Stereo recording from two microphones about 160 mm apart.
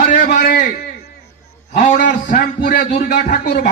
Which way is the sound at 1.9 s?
55° left (ahead or behind).